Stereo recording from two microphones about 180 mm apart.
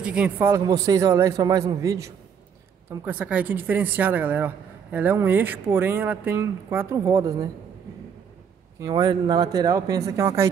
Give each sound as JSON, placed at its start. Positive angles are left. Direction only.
{"t": 0.0, "sound": "speech", "side_deg": -5}
{"t": 0.5, "sound": "speech", "side_deg": -20}
{"t": 8.7, "sound": "speech", "side_deg": -20}